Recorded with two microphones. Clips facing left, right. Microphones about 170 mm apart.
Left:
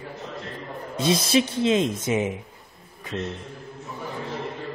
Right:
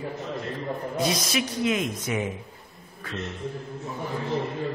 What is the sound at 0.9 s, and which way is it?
Speech, 25° left (ahead or behind).